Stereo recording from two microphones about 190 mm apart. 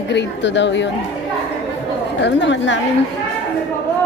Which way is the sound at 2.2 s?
70° left (ahead or behind).